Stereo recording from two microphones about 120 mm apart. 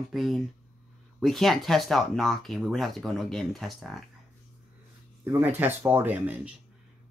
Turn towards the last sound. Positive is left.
turn(degrees=-15)  # may be behind; listen again after turning